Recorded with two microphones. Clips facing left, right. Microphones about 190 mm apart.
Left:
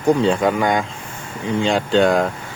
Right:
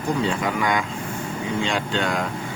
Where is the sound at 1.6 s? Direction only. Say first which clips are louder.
Left 11 dB; 50° left (ahead or behind).